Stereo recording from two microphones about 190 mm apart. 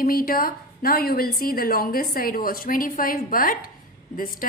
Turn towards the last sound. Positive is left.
turn(degrees=50)  # may be behind; listen again after turning